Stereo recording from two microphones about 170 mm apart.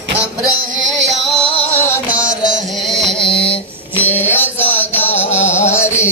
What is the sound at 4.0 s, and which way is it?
Music, 10° left (ahead or behind).